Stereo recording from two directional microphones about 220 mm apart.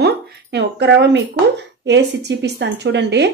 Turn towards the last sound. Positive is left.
turn(degrees=-50)  # may be behind; listen again after turning